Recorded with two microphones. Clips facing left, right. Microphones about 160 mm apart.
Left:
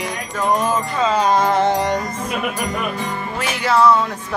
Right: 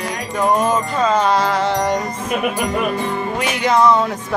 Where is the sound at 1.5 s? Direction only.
55° left (ahead or behind).